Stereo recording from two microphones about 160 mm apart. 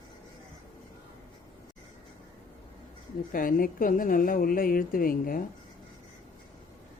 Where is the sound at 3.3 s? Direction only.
60° left (ahead or behind).